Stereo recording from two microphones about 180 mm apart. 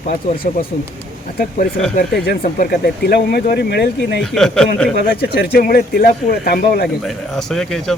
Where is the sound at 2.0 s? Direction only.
60° left (ahead or behind).